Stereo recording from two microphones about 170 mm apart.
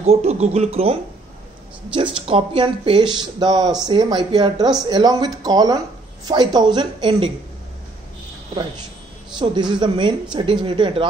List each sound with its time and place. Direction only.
0.0 s speech: 35° right (ahead or behind)
9.4 s speech: 25° right (ahead or behind)